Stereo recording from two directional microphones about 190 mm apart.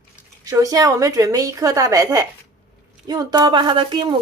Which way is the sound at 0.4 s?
20° right (ahead or behind).